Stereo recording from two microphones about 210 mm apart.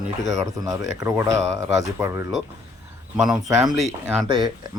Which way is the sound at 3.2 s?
Centre (ahead or behind).